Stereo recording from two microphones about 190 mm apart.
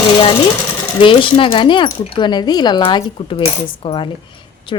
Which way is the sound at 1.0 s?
25° left (ahead or behind).